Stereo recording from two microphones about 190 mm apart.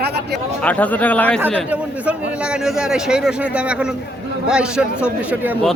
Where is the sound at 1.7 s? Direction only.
5° right (ahead or behind).